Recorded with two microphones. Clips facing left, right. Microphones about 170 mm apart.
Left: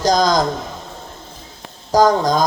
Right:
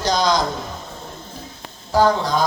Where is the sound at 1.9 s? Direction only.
40° left (ahead or behind).